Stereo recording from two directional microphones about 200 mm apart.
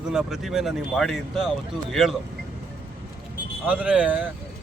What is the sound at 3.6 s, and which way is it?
Speech, 5° right (ahead or behind).